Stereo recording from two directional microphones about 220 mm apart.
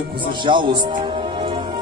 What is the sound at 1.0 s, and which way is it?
Music, 25° right (ahead or behind).